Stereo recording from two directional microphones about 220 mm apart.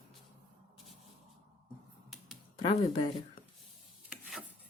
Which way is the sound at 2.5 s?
20° left (ahead or behind).